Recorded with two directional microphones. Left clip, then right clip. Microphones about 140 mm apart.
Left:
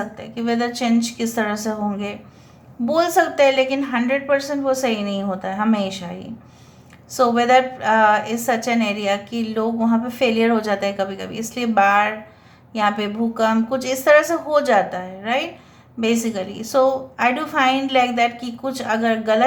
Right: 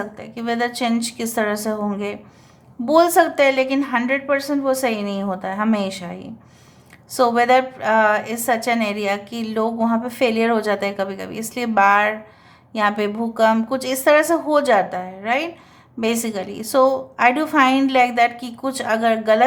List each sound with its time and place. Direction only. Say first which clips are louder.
0.0 s a woman's voice: left 1 dB; 30° right (ahead or behind)